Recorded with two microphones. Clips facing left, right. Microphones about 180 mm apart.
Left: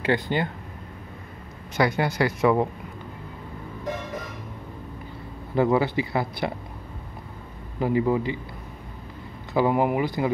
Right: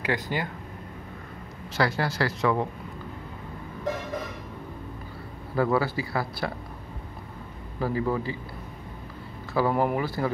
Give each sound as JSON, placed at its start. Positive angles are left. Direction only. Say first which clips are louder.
{"t": 0.0, "sound": "speech", "louder": "left 5 dB", "side_deg": 25}
{"t": 1.8, "sound": "speech", "louder": "left 3 dB", "side_deg": 20}
{"t": 5.6, "sound": "speech", "louder": "left 3 dB", "side_deg": 20}
{"t": 7.8, "sound": "speech", "louder": "left 4 dB", "side_deg": 20}
{"t": 9.5, "sound": "speech", "louder": "left 3 dB", "side_deg": 15}